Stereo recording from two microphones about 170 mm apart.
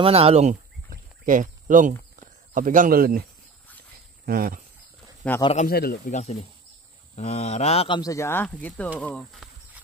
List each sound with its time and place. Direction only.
0.0 s speech: 35° right (ahead or behind)
1.2 s speech: 50° right (ahead or behind)
4.3 s speech: 60° right (ahead or behind)
5.2 s speech: 5° left (ahead or behind)
5.7 s speech: 65° left (ahead or behind)
6.0 s speech: 40° left (ahead or behind)
8.0 s speech: 20° left (ahead or behind); by 9.5 s 5° left (ahead or behind)